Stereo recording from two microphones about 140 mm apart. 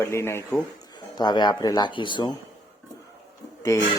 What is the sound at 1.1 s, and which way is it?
Speech, 30° left (ahead or behind).